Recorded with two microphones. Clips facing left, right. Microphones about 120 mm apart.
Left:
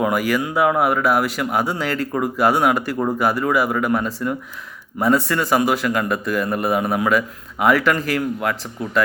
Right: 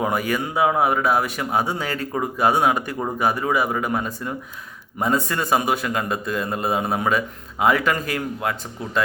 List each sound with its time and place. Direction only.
0.0 s a man's voice: 30° right (ahead or behind)